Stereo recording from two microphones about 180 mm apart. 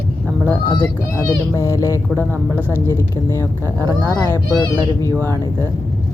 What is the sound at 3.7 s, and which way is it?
Speech, 20° right (ahead or behind).